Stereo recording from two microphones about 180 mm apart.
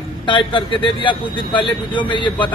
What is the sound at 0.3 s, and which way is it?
A man's voice, 30° left (ahead or behind).